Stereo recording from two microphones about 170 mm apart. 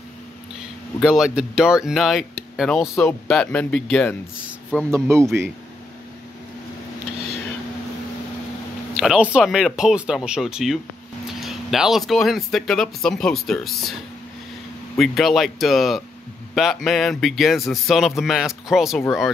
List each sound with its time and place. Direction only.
1.0 s speech: centre (ahead or behind)
4.9 s speech: 15° right (ahead or behind)
8.9 s speech: 5° right (ahead or behind)
15.0 s speech: centre (ahead or behind)